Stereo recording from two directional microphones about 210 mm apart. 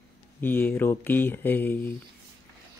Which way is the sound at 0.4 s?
10° left (ahead or behind).